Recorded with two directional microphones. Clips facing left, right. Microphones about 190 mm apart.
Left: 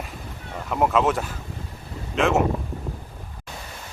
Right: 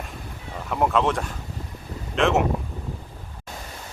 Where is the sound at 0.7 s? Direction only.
5° left (ahead or behind).